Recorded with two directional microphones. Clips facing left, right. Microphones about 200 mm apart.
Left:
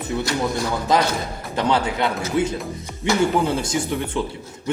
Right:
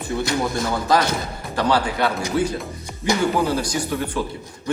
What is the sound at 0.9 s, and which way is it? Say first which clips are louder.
A man's voice: even; 20° left (ahead or behind).